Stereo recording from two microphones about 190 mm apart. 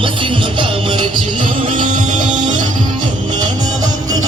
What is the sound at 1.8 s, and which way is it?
Music, 40° right (ahead or behind).